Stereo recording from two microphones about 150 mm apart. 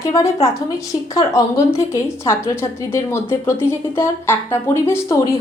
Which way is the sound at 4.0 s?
15° left (ahead or behind).